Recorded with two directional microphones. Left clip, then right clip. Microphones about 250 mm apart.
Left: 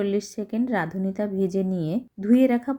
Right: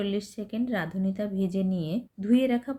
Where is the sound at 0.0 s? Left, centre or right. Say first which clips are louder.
Left 6 dB; centre.